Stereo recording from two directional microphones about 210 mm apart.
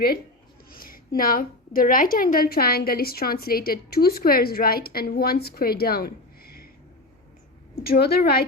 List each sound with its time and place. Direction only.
0.7 s a woman's voice: 45° left (ahead or behind)
7.9 s a woman's voice: 50° left (ahead or behind)